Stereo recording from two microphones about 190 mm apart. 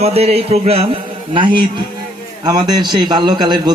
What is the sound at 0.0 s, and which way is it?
A man's voice, 35° right (ahead or behind).